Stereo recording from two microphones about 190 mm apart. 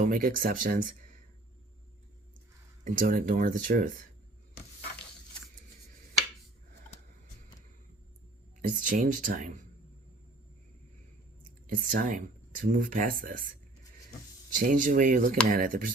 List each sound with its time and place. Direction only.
0.0 s speech: 45° right (ahead or behind)
2.8 s speech: 45° right (ahead or behind)
8.6 s speech: 45° right (ahead or behind)
11.4 s speech: 45° right (ahead or behind)
14.5 s speech: 45° right (ahead or behind)